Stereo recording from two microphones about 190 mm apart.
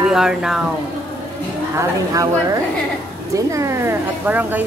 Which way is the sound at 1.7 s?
20° right (ahead or behind).